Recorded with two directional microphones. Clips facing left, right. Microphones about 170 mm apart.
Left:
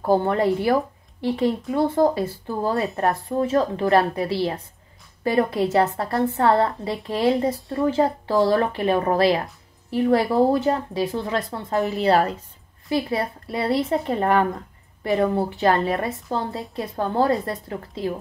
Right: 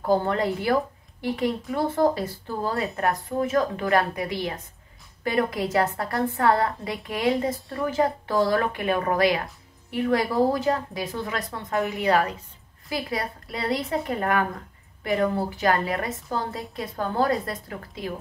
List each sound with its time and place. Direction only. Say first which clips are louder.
0.0 s a woman's voice: left 3 dB; 20° left (ahead or behind)
12.8 s a woman's voice: left 6 dB; 25° left (ahead or behind)